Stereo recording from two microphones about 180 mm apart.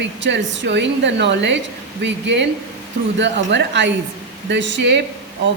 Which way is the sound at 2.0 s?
75° right (ahead or behind).